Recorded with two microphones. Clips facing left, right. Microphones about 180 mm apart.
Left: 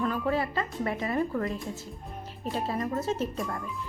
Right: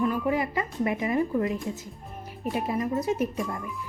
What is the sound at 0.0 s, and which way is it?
A woman's voice, 15° right (ahead or behind).